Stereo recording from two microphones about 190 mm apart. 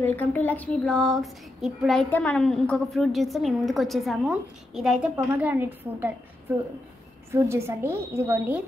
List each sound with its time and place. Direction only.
0.0 s a woman's voice: 10° left (ahead or behind); by 6.1 s 10° right (ahead or behind)
7.2 s a woman's voice: 15° right (ahead or behind)